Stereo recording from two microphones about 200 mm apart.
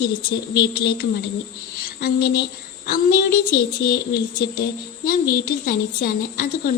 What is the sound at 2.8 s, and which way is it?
A woman's voice, 45° left (ahead or behind).